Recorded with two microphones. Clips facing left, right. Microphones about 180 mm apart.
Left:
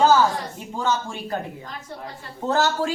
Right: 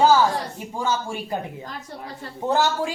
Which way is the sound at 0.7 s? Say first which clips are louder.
Left 1 dB; 10° right (ahead or behind).